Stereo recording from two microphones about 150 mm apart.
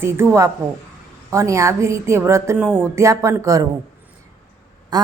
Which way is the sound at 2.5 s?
5° right (ahead or behind).